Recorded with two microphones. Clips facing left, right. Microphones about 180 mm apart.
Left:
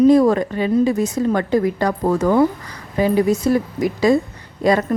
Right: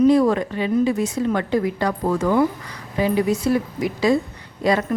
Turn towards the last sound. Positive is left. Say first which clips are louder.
# left 3 dB
turn(degrees=45)  # may be behind; listen again after turning